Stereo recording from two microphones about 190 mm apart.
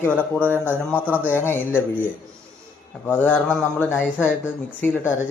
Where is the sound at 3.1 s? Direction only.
10° left (ahead or behind).